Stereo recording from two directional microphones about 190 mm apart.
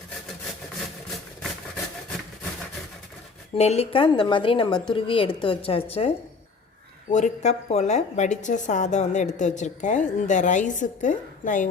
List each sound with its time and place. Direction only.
3.5 s a woman's voice: 35° left (ahead or behind)
7.1 s a woman's voice: 40° left (ahead or behind)